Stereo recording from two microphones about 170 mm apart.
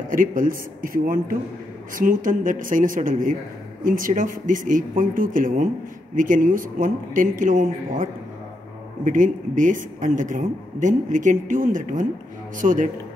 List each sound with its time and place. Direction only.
0.1 s a man's voice: 55° right (ahead or behind)